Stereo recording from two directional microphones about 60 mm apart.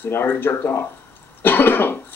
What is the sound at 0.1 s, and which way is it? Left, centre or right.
Speech, left.